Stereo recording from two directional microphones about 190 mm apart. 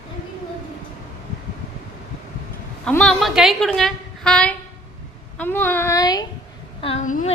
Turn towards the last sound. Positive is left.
turn(degrees=40)  # may be behind; listen again after turning